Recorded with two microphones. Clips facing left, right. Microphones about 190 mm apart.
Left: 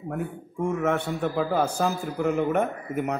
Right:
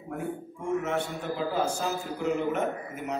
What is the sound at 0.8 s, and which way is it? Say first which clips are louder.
A man's voice: left 5 dB; 60° left (ahead or behind).